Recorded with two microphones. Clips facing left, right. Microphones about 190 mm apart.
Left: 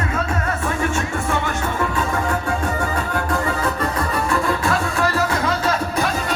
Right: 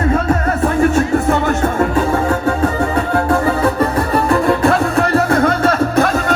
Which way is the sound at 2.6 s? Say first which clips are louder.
Right 7 dB; 65° right (ahead or behind).